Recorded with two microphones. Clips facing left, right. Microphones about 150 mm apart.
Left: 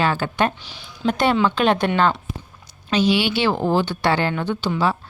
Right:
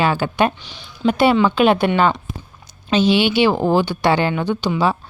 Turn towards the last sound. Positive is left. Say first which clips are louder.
# right 3 dB
turn(degrees=-15)  # may be behind; listen again after turning